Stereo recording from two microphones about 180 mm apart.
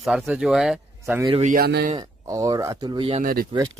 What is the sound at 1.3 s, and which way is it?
Speech, 35° right (ahead or behind).